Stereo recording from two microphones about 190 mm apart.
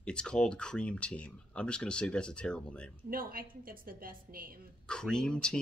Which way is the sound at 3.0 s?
50° right (ahead or behind).